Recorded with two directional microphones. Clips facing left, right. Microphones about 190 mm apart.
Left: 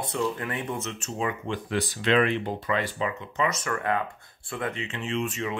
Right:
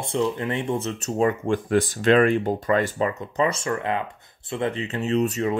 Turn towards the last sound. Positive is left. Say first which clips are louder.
# right 7 dB
turn(degrees=-40)  # may be behind; listen again after turning